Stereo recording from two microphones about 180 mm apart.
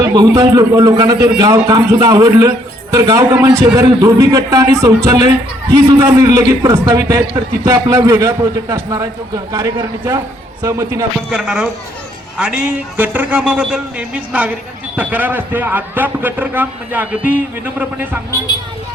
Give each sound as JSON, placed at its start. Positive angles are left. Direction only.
{"t": 0.0, "sound": "a man's voice", "side_deg": -20}
{"t": 11.3, "sound": "a man's voice", "side_deg": -5}